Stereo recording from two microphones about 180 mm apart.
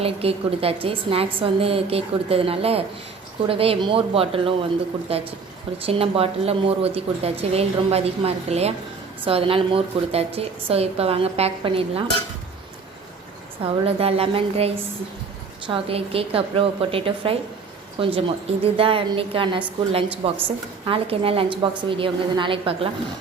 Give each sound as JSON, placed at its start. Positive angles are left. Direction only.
{"t": 0.0, "sound": "a woman's voice", "side_deg": -30}
{"t": 13.8, "sound": "a woman's voice", "side_deg": -35}